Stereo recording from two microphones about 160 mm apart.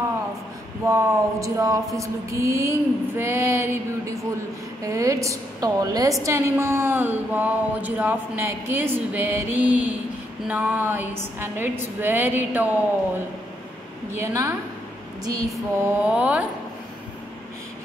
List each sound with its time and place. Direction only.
0.8 s a woman's voice: 20° right (ahead or behind)
14.1 s a woman's voice: 20° right (ahead or behind)
15.5 s speech: 5° right (ahead or behind)